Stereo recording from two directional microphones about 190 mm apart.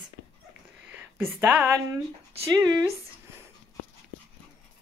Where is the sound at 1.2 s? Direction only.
10° right (ahead or behind).